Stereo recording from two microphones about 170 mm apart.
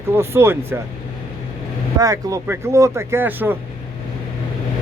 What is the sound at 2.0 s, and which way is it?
Speech, 20° right (ahead or behind).